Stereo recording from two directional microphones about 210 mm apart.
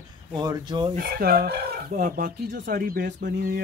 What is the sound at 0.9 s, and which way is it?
Speech, 45° right (ahead or behind).